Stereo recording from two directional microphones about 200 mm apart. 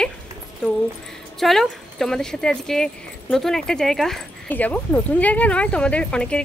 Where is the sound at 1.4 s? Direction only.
Centre (ahead or behind).